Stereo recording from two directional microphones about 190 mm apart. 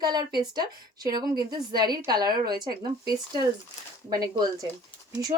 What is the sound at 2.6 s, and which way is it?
Speech, 50° right (ahead or behind).